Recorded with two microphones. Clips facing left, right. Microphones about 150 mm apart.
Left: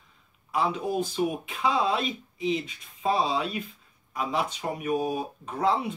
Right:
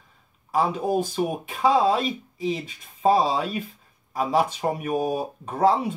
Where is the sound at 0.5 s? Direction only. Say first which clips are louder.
Right 4 dB; 45° right (ahead or behind).